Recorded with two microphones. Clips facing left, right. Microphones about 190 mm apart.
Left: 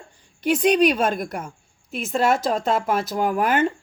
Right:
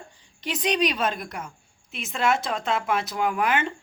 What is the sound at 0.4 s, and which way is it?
Speech, 55° left (ahead or behind).